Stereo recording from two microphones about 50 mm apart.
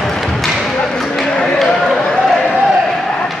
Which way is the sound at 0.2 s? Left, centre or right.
Centre.